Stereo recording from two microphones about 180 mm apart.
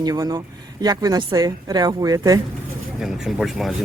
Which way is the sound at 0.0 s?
20° right (ahead or behind).